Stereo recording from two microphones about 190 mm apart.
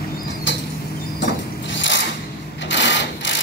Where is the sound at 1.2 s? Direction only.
70° left (ahead or behind).